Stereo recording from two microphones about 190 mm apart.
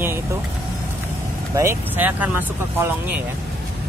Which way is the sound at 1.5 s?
10° right (ahead or behind).